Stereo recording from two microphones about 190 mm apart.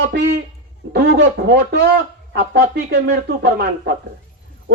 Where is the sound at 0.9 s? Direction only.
60° right (ahead or behind).